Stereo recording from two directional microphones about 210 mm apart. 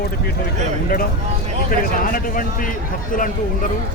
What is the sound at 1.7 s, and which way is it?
Speech, 40° left (ahead or behind).